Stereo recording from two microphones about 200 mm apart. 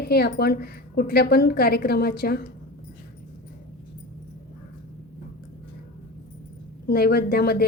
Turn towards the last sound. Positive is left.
turn(degrees=50)  # may be behind; listen again after turning